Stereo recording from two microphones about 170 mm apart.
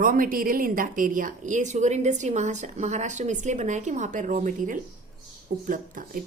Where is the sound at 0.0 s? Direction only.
55° right (ahead or behind).